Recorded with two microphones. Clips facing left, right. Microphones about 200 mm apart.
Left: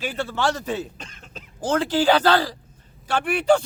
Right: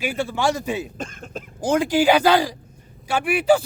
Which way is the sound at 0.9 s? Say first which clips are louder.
Right 10 dB; 50° right (ahead or behind).